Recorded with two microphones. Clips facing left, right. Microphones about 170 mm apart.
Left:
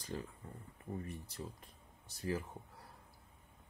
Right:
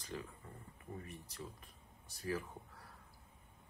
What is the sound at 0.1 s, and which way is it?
Speech, 35° left (ahead or behind).